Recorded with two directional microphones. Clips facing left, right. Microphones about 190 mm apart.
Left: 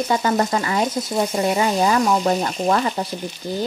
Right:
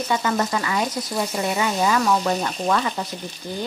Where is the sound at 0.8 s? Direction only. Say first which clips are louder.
Left 4 dB; 25° left (ahead or behind).